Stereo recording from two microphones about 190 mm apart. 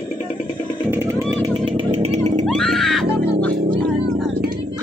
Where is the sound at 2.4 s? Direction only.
Centre (ahead or behind).